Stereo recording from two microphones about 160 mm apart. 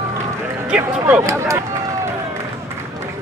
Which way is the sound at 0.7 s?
10° right (ahead or behind).